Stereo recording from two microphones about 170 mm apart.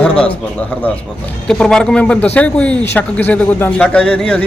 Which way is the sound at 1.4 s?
5° left (ahead or behind).